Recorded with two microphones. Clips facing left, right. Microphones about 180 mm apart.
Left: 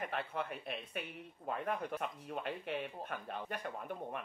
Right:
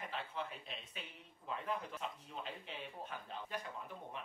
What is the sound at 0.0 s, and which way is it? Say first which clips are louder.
Speech: left 5 dB; 60° left (ahead or behind).